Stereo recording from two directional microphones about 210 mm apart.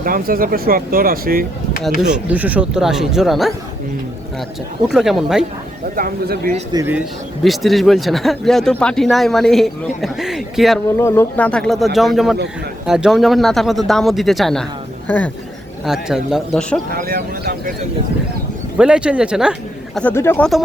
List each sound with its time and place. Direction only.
0.0 s speech: 45° right (ahead or behind)
2.0 s a man's voice: 5° right (ahead or behind)
4.9 s a man's voice: centre (ahead or behind)
6.0 s speech: 45° right (ahead or behind)
6.7 s speech: 10° right (ahead or behind)
7.4 s a man's voice: centre (ahead or behind)
10.9 s a man's voice: 10° left (ahead or behind)
16.9 s speech: 45° right (ahead or behind)
18.8 s a man's voice: 5° right (ahead or behind)
20.0 s speech: 10° left (ahead or behind)